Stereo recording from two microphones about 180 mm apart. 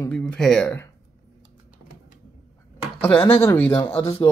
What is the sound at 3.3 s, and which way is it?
Speech, 10° left (ahead or behind).